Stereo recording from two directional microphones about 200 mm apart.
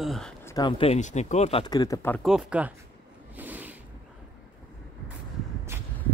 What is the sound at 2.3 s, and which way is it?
Speech, 5° right (ahead or behind).